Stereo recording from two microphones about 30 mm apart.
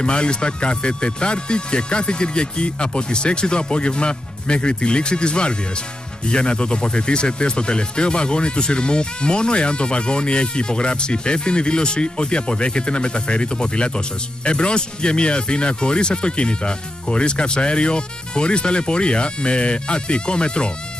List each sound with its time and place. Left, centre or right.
0.0 s speech: left